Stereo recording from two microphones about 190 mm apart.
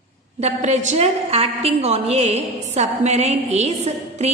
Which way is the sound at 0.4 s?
40° right (ahead or behind).